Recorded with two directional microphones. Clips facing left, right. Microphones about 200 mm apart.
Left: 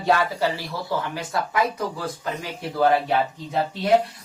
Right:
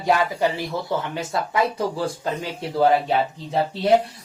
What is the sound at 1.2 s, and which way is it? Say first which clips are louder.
A man's voice: right 2 dB; 30° right (ahead or behind).